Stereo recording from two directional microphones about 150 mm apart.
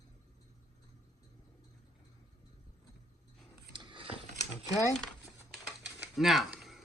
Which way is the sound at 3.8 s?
35° right (ahead or behind).